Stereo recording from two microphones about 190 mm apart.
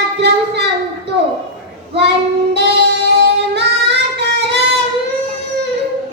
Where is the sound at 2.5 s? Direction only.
65° right (ahead or behind).